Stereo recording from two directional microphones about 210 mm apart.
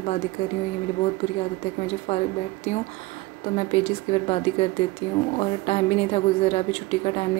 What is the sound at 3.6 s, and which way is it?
A woman's voice, 25° left (ahead or behind).